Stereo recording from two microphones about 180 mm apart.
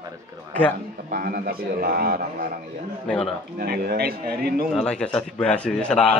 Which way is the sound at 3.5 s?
55° right (ahead or behind).